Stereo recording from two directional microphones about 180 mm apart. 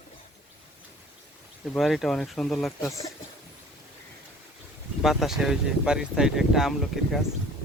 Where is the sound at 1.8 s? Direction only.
Centre (ahead or behind).